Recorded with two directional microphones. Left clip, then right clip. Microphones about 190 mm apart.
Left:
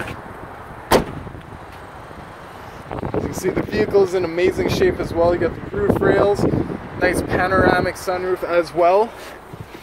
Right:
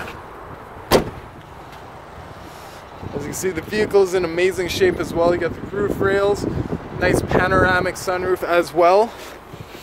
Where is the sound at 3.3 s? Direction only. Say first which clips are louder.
Right 2 dB; 15° right (ahead or behind).